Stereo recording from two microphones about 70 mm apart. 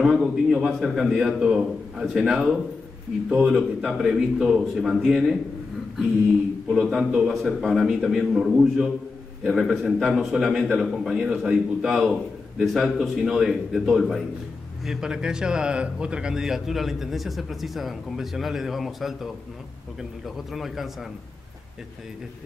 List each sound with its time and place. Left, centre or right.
0.0 s a man's voice: centre
6.7 s a man's voice: centre
14.9 s a man's voice: centre